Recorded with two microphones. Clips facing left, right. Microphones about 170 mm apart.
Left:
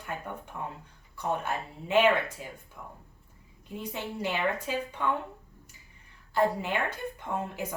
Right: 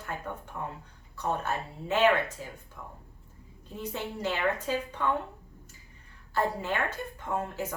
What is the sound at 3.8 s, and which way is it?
A woman's voice, 15° left (ahead or behind).